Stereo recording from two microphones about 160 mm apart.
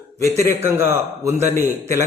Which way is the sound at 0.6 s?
15° right (ahead or behind).